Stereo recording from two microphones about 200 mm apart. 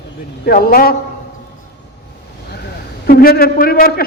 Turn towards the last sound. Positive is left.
turn(degrees=50)  # may be behind; listen again after turning